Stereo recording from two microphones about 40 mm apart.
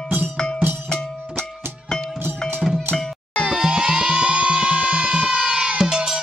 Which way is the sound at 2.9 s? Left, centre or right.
Right.